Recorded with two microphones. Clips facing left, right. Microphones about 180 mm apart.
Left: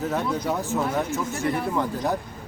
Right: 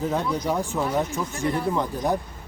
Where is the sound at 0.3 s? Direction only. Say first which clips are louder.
Even; 15° right (ahead or behind).